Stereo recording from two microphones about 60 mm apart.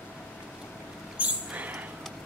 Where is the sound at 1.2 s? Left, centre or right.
Right.